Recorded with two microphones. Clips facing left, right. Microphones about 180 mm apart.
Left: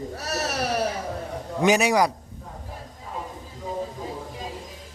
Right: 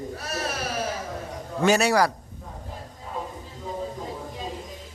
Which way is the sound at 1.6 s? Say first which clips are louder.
Left 1 dB; 15° left (ahead or behind).